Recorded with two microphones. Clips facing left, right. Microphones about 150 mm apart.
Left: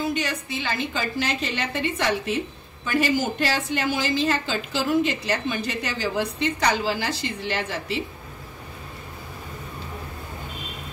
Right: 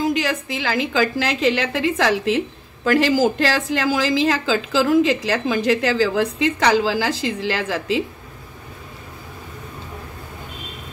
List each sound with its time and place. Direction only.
0.0 s a woman's voice: 90° right